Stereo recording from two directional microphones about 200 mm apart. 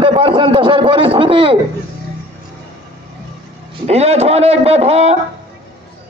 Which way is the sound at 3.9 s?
30° right (ahead or behind).